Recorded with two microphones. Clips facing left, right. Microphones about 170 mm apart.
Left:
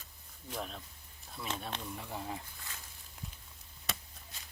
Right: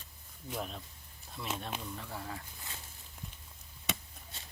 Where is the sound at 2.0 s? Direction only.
15° left (ahead or behind).